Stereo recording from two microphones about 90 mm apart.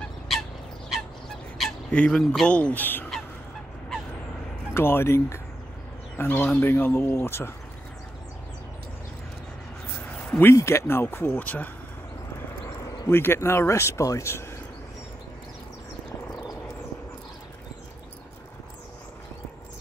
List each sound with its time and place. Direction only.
0.3 s turkey: centre (ahead or behind)
1.9 s speech: 10° left (ahead or behind)
4.7 s speech: 25° left (ahead or behind)
10.0 s a sound: 20° left (ahead or behind)
10.5 s speech: 30° left (ahead or behind)
12.6 s speech: 35° left (ahead or behind)